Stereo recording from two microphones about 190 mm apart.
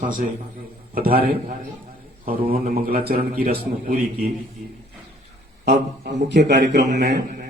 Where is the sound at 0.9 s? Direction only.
50° right (ahead or behind).